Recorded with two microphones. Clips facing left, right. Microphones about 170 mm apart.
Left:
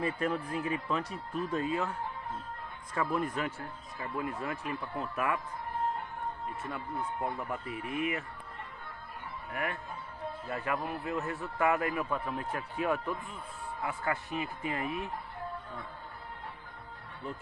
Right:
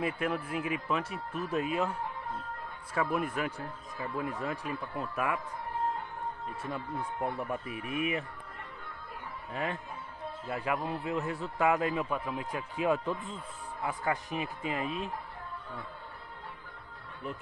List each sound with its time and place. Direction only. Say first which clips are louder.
0.0 s speech: even; 10° right (ahead or behind)
6.7 s a man's voice: right 1 dB; 15° right (ahead or behind)
9.5 s a man's voice: right 1 dB; 25° right (ahead or behind)